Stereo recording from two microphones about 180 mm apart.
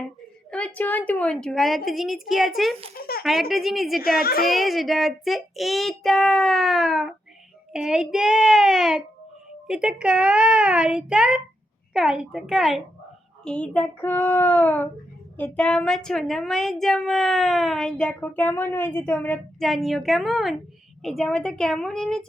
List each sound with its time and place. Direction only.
0.5 s a woman's voice: 10° left (ahead or behind)
3.0 s a sound: 55° left (ahead or behind)
3.5 s a woman's voice: centre (ahead or behind)
4.2 s a woman's voice: 55° left (ahead or behind)
4.4 s a woman's voice: centre (ahead or behind)
13.4 s child singing: 5° left (ahead or behind)
15.4 s a woman's voice: 5° left (ahead or behind)